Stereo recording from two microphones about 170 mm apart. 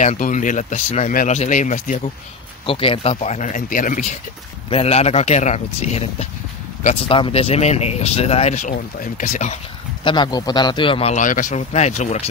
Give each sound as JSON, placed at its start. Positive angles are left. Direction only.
{"t": 0.0, "sound": "speech", "side_deg": 45}
{"t": 2.6, "sound": "speech", "side_deg": 30}
{"t": 4.6, "sound": "speech", "side_deg": 35}
{"t": 10.0, "sound": "speech", "side_deg": 25}